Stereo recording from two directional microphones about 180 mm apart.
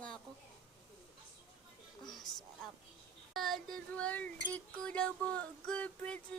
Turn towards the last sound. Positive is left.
turn(degrees=5)  # may be behind; listen again after turning